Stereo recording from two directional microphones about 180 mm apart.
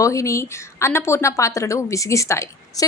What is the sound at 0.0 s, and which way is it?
Speech, 15° left (ahead or behind).